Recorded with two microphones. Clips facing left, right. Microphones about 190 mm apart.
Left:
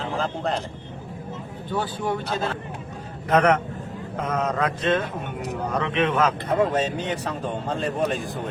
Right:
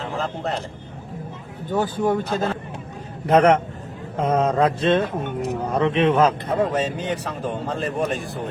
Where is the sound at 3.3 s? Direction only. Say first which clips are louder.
Right 4 dB; 30° right (ahead or behind).